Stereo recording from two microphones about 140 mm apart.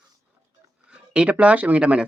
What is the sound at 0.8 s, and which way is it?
Speech, 5° right (ahead or behind).